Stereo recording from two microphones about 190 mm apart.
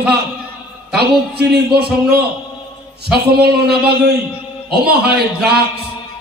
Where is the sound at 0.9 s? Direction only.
60° right (ahead or behind).